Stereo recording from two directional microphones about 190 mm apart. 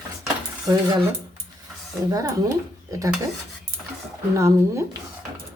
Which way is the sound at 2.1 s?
20° right (ahead or behind).